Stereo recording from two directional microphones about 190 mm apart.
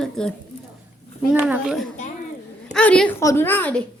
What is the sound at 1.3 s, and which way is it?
A woman's voice, 10° right (ahead or behind).